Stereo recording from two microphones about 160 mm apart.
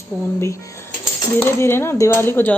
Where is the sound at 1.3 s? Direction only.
15° left (ahead or behind).